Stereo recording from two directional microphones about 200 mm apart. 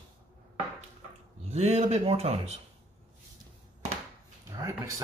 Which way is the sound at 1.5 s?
30° right (ahead or behind).